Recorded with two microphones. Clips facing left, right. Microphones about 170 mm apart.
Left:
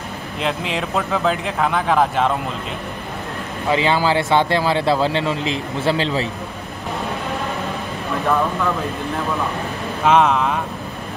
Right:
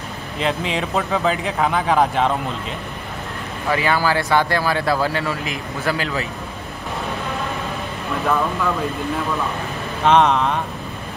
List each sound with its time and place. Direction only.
0.4 s speech: centre (ahead or behind)
3.6 s speech: 20° left (ahead or behind)
10.0 s speech: 5° left (ahead or behind)